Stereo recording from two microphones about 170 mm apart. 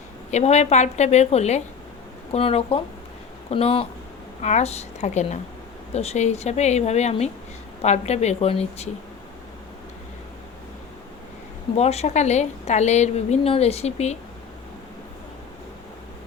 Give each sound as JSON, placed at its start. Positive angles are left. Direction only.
{"t": 0.3, "sound": "a woman's voice", "side_deg": 40}
{"t": 11.8, "sound": "a woman's voice", "side_deg": 40}